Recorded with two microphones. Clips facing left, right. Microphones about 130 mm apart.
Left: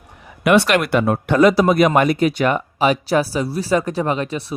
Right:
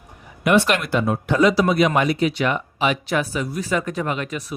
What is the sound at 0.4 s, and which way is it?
Speech, 75° left (ahead or behind).